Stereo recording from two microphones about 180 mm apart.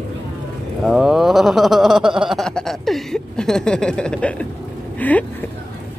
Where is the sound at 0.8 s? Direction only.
5° right (ahead or behind).